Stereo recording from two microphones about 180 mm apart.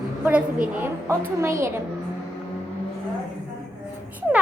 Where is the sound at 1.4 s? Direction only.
15° right (ahead or behind).